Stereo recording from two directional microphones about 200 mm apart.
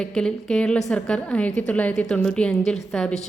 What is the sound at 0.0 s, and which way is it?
A woman's voice, 5° left (ahead or behind).